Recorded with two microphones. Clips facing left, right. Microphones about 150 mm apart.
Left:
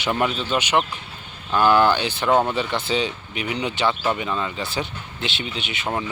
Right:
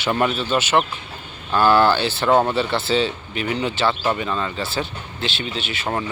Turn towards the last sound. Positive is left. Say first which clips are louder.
# right 2 dB
turn(degrees=20)  # may be behind; listen again after turning